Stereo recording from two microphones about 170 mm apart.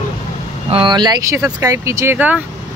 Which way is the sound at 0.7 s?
30° right (ahead or behind).